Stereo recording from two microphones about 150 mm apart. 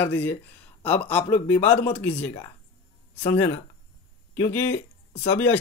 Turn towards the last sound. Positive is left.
turn(degrees=15)  # may be behind; listen again after turning